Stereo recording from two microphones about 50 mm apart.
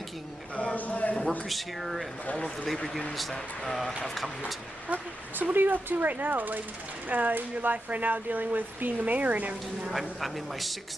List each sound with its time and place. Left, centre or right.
0.7 s clip-clop: left
1.4 s speech: centre
2.3 s speech: centre
2.7 s speech: centre
4.8 s speech: right
9.8 s speech: centre